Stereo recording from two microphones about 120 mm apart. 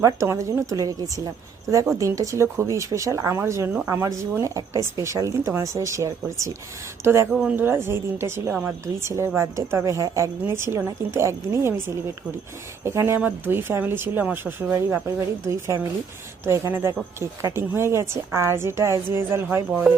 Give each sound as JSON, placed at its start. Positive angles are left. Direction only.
{"t": 0.0, "sound": "speech", "side_deg": -25}
{"t": 12.8, "sound": "speech", "side_deg": -20}